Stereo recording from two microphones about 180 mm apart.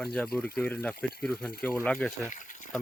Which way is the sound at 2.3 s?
45° left (ahead or behind).